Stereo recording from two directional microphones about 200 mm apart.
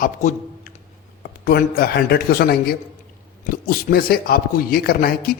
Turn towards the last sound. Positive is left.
turn(degrees=50)  # may be behind; listen again after turning